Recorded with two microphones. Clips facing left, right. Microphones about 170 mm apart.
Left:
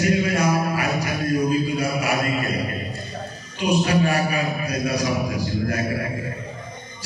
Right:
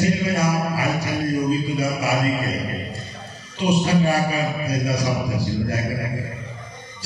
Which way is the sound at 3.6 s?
30° right (ahead or behind).